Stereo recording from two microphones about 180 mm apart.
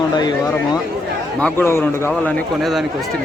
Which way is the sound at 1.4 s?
10° left (ahead or behind).